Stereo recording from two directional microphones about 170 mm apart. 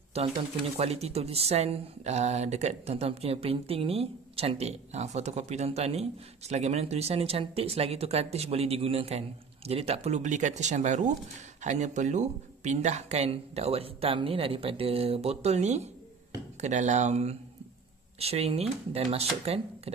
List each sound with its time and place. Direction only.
0.2 s speech: 35° right (ahead or behind)